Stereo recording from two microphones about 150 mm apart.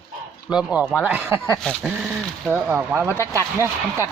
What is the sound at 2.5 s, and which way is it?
Speech, 10° right (ahead or behind).